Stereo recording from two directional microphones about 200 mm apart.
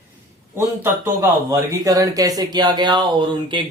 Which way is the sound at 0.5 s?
10° right (ahead or behind).